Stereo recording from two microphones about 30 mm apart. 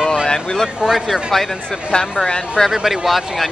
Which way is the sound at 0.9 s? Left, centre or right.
Centre.